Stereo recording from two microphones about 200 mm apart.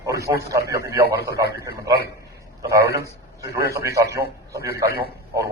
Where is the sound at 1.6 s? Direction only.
15° right (ahead or behind).